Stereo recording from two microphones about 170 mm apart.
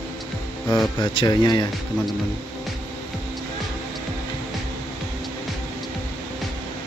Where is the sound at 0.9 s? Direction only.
25° left (ahead or behind).